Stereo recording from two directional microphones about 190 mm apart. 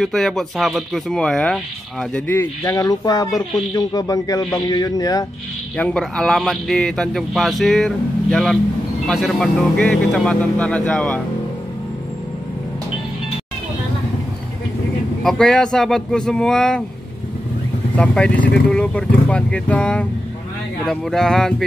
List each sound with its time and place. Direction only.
0.0 s a man's voice: centre (ahead or behind); by 5.2 s 20° left (ahead or behind)
5.8 s speech: 5° left (ahead or behind)
15.2 s speech: 5° left (ahead or behind)
17.9 s speech: 5° left (ahead or behind)